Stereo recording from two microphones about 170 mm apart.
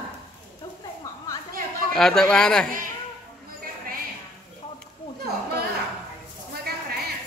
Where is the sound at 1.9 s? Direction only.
5° left (ahead or behind).